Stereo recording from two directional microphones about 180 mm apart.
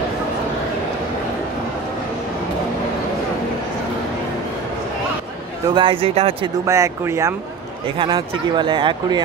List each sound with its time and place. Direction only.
5.7 s speech: 25° right (ahead or behind)
6.6 s speech: 15° right (ahead or behind)
8.0 s speech: 30° right (ahead or behind)